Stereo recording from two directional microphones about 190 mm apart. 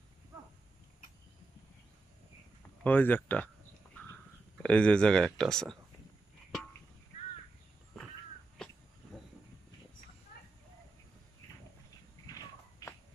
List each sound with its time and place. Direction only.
2.8 s speech: 10° left (ahead or behind)
4.6 s speech: 5° left (ahead or behind)
12.3 s a sound: 20° left (ahead or behind)